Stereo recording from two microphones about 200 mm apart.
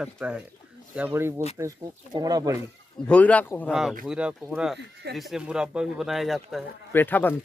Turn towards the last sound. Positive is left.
turn(degrees=10)  # may be behind; listen again after turning